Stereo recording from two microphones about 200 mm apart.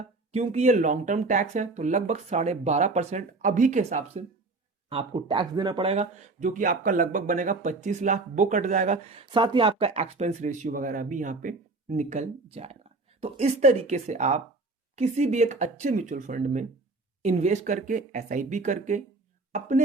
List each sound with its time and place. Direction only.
0.0 s speech: 35° right (ahead or behind)